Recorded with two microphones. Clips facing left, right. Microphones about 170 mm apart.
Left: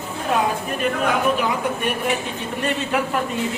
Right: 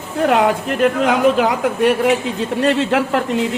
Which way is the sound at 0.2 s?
80° right.